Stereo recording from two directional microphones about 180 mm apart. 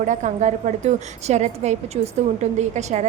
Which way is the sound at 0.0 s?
45° right (ahead or behind).